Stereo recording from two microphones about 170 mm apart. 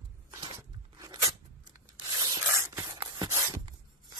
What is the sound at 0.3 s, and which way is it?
Crunch, 25° right (ahead or behind).